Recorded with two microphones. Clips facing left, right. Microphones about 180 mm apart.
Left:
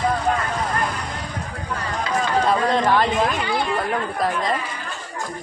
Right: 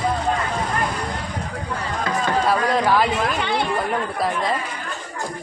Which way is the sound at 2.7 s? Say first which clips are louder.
Even; 5° right (ahead or behind).